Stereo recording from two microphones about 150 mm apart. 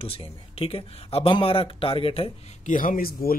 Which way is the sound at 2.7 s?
65° left (ahead or behind).